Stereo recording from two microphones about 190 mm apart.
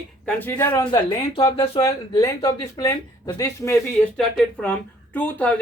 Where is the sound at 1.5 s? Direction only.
30° left (ahead or behind); by 5.6 s 5° left (ahead or behind).